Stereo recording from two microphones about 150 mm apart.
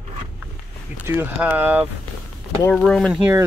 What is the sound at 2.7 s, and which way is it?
Speech, 5° left (ahead or behind).